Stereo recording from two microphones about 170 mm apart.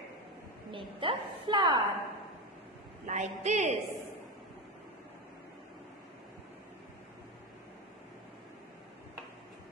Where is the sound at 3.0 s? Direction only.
45° right (ahead or behind).